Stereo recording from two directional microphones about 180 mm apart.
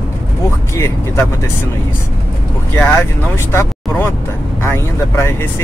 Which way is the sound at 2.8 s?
10° left (ahead or behind).